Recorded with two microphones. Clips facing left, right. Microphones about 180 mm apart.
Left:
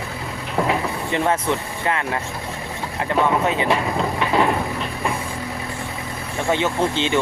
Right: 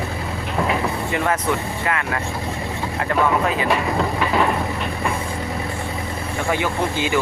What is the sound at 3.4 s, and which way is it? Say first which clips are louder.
Speech: left 1 dB; 25° left (ahead or behind).